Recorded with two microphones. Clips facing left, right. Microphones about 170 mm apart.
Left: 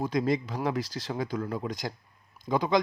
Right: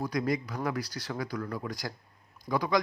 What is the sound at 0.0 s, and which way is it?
Speech, 25° left (ahead or behind).